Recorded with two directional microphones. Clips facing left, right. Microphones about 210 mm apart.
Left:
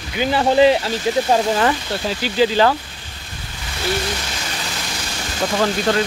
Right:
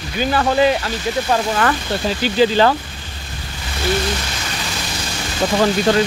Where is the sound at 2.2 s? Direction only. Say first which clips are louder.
Right 1 dB; 5° left (ahead or behind).